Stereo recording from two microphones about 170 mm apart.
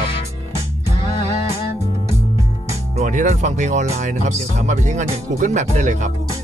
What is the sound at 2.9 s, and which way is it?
Speech, 45° right (ahead or behind).